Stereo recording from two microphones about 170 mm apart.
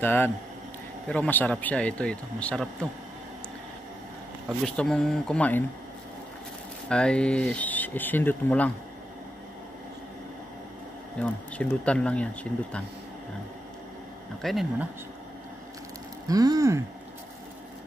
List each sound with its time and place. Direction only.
0.0 s a man's voice: 10° left (ahead or behind)
4.6 s speech: 5° left (ahead or behind)
6.9 s a man's voice: 5° left (ahead or behind)
11.1 s a man's voice: 5° left (ahead or behind)
14.4 s speech: centre (ahead or behind)
16.3 s a sound: 20° right (ahead or behind)